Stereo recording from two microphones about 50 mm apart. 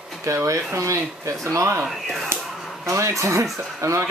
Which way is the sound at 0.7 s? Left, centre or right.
Right.